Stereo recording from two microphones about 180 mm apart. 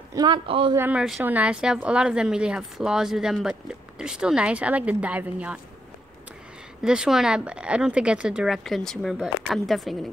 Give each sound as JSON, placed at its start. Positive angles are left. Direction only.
{"t": 0.1, "sound": "speech", "side_deg": -25}
{"t": 0.7, "sound": "a woman's voice", "side_deg": -10}
{"t": 6.8, "sound": "a woman's voice", "side_deg": -5}